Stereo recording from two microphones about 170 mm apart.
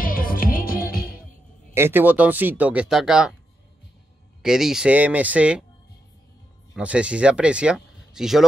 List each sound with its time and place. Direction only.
0.0 s music: 55° left (ahead or behind)
1.7 s speech: 15° right (ahead or behind)
4.4 s speech: 5° right (ahead or behind)
6.7 s speech: 5° right (ahead or behind)